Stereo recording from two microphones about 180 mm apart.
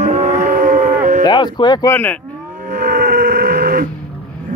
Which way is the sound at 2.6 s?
50° right (ahead or behind).